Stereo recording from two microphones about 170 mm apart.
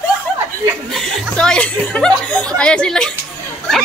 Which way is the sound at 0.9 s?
5° left (ahead or behind).